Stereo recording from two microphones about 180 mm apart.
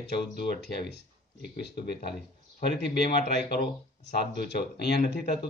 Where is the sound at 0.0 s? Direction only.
65° left (ahead or behind).